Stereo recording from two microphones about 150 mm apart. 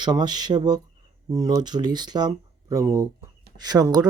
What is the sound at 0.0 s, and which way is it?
Speech, 25° right (ahead or behind).